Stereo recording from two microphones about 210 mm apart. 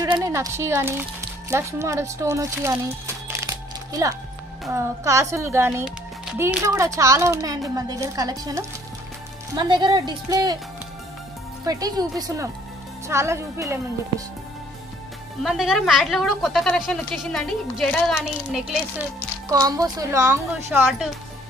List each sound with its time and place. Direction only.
0.0 s speech: 15° right (ahead or behind)
11.6 s speech: 15° right (ahead or behind)
15.4 s speech: centre (ahead or behind)
19.5 s speech: 15° right (ahead or behind)